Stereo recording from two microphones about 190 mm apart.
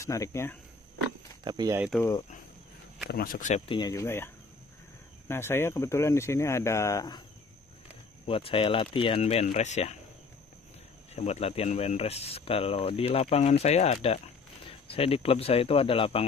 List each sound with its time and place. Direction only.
0.0 s speech: 15° left (ahead or behind)
1.4 s speech: 20° right (ahead or behind)
2.0 s speech: 15° left (ahead or behind)
3.1 s speech: 50° left (ahead or behind)
3.6 s speech: 25° left (ahead or behind)
3.9 s speech: 15° left (ahead or behind)
5.3 s speech: 10° left (ahead or behind)
8.3 s speech: 30° left (ahead or behind)
11.1 s speech: 35° left (ahead or behind)